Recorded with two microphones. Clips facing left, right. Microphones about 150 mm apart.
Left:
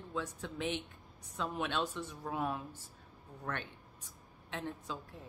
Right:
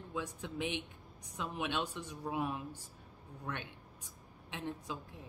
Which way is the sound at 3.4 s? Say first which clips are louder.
Left 2 dB; 15° right (ahead or behind).